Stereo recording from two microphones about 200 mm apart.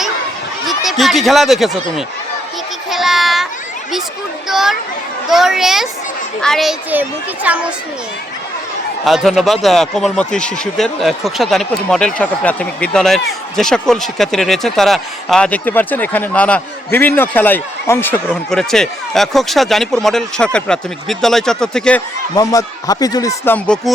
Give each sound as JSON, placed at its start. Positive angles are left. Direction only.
{"t": 0.7, "sound": "speech", "side_deg": 0}
{"t": 2.9, "sound": "child singing", "side_deg": 0}
{"t": 4.4, "sound": "speech", "side_deg": 0}
{"t": 9.0, "sound": "speech", "side_deg": 0}
{"t": 22.4, "sound": "speech", "side_deg": 15}
{"t": 23.6, "sound": "speech", "side_deg": 5}